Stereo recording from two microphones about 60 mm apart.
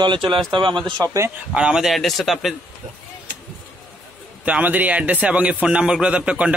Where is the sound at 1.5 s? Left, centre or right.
Centre.